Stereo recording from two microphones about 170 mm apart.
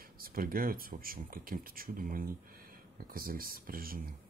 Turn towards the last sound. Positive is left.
turn(degrees=-60)  # may be behind; listen again after turning